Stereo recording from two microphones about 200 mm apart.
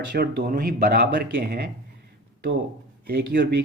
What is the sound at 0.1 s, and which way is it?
Speech, 45° right (ahead or behind).